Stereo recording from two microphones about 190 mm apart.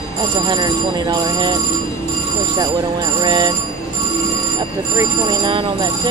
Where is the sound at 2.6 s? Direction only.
20° right (ahead or behind).